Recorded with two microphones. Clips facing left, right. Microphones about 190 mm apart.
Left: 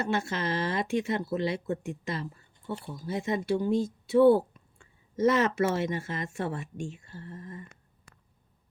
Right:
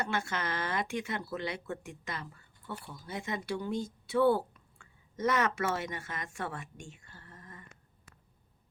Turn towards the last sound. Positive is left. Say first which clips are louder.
# left 11 dB
turn(degrees=25)  # may be behind; listen again after turning